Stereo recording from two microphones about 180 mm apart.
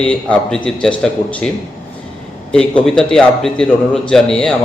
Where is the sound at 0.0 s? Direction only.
5° left (ahead or behind).